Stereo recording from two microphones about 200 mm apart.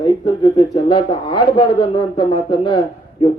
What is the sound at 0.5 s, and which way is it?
A man's voice, 25° left (ahead or behind).